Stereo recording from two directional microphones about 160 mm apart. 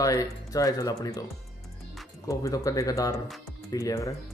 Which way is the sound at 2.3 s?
20° left (ahead or behind).